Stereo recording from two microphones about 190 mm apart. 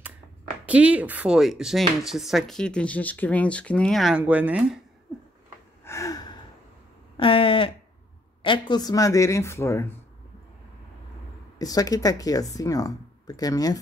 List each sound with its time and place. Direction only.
0.7 s speech: 5° right (ahead or behind)
5.9 s gasp: 15° left (ahead or behind)
7.2 s speech: 30° left (ahead or behind)
11.5 s speech: 20° left (ahead or behind)